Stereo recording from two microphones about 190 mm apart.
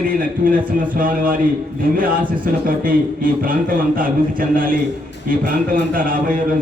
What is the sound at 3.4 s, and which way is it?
A man's voice, 45° right (ahead or behind).